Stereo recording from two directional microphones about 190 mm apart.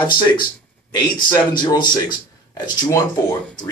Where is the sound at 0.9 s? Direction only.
25° left (ahead or behind).